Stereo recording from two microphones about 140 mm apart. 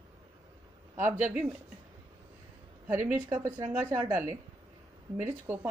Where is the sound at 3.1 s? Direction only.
10° right (ahead or behind).